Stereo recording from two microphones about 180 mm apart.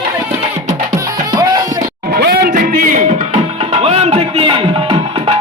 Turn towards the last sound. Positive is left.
turn(degrees=-30)  # may be behind; listen again after turning